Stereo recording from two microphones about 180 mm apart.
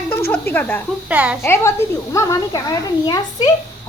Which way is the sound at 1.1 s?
5° right (ahead or behind).